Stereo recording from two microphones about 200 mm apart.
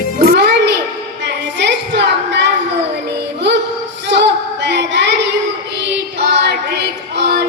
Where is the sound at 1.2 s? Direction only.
60° right (ahead or behind).